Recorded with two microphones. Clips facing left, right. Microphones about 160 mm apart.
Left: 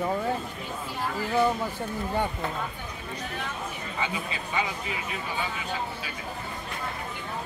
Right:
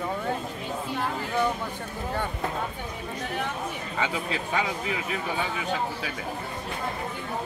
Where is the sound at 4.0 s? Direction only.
90° right.